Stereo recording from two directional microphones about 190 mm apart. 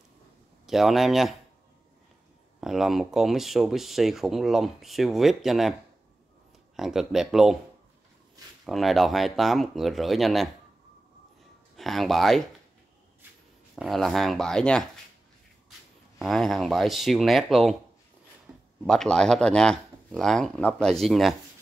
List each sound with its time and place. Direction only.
0.7 s speech: centre (ahead or behind)
2.6 s speech: centre (ahead or behind)
6.8 s speech: centre (ahead or behind)
8.6 s speech: centre (ahead or behind)
11.7 s speech: centre (ahead or behind)
13.7 s speech: centre (ahead or behind)
16.2 s speech: centre (ahead or behind)
18.5 s a sound: 5° right (ahead or behind)
18.9 s speech: 5° left (ahead or behind)